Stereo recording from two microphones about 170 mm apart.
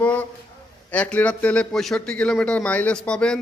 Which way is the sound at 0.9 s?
10° left (ahead or behind).